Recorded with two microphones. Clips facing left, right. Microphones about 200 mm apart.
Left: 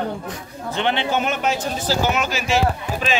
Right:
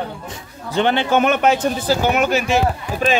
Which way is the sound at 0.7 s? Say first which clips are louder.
Right 5 dB; 45° right (ahead or behind).